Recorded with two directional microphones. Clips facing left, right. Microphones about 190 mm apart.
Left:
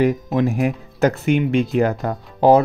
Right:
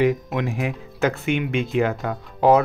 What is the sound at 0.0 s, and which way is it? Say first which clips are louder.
Speech: left 3 dB; 40° left (ahead or behind).